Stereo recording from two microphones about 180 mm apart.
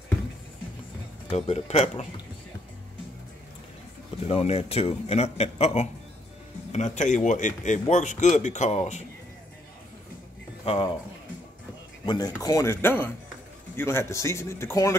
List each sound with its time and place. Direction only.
1.3 s a man's voice: 35° left (ahead or behind)
4.3 s a man's voice: 35° left (ahead or behind)
10.6 s speech: 30° left (ahead or behind)
12.1 s a man's voice: 20° left (ahead or behind)